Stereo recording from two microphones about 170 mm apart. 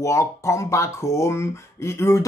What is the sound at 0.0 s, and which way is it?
Speech, 15° left (ahead or behind).